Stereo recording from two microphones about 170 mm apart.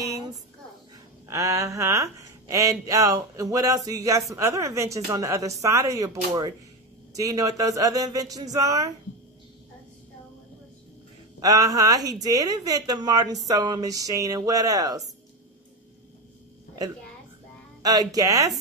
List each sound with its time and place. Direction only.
1.2 s speech: 20° right (ahead or behind)
11.3 s speech: 20° right (ahead or behind)
17.8 s speech: 20° right (ahead or behind)